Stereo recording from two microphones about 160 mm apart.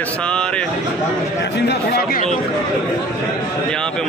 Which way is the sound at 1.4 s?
90° left.